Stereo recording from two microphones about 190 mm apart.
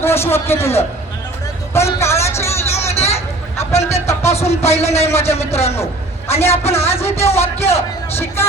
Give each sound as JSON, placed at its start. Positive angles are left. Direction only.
{"t": 0.0, "sound": "a man's voice", "side_deg": 15}
{"t": 2.9, "sound": "hubbub", "side_deg": 35}
{"t": 3.2, "sound": "a sound", "side_deg": 15}
{"t": 4.0, "sound": "speech", "side_deg": 15}
{"t": 4.3, "sound": "a man's voice", "side_deg": 35}
{"t": 4.8, "sound": "speech", "side_deg": 15}
{"t": 5.2, "sound": "a man's voice", "side_deg": 35}
{"t": 5.7, "sound": "a sound", "side_deg": 15}
{"t": 6.7, "sound": "speech", "side_deg": 15}
{"t": 7.2, "sound": "a man's voice", "side_deg": 35}
{"t": 7.6, "sound": "speech", "side_deg": 15}